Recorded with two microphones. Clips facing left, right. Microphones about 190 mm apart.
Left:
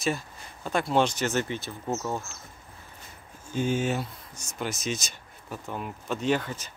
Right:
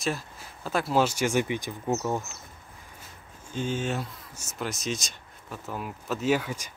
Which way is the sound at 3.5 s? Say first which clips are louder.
Left 3 dB; 10° left (ahead or behind).